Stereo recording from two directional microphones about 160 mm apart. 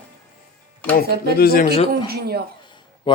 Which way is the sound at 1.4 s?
70° left (ahead or behind).